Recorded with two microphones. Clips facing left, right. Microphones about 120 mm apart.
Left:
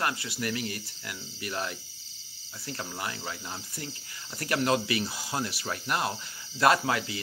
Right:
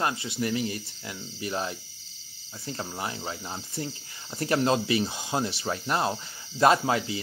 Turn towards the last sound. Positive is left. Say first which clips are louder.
# right 2 dB
turn(degrees=-25)  # may be behind; listen again after turning